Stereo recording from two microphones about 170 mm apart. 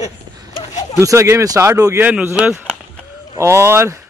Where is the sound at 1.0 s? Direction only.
15° right (ahead or behind).